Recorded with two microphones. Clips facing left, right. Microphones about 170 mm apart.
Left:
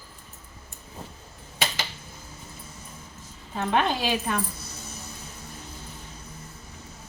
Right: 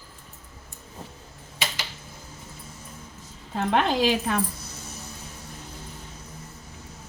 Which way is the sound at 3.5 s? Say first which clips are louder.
Right 2 dB; 90° right.